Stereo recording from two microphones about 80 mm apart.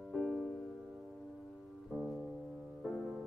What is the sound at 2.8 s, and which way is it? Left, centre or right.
Music, centre.